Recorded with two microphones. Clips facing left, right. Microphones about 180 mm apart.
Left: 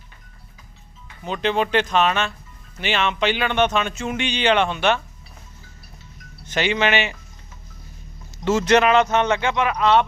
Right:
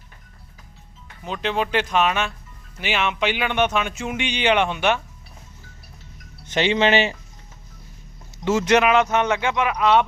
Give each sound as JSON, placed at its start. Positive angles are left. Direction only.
{"t": 1.2, "sound": "speech", "side_deg": 0}
{"t": 6.4, "sound": "speech", "side_deg": -25}
{"t": 8.4, "sound": "speech", "side_deg": -15}